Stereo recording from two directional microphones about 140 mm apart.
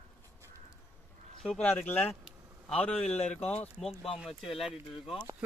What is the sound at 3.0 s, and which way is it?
Speech, 50° left (ahead or behind).